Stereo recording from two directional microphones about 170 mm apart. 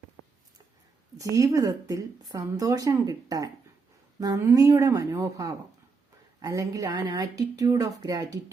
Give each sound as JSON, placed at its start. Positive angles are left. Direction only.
{"t": 1.2, "sound": "a woman's voice", "side_deg": -20}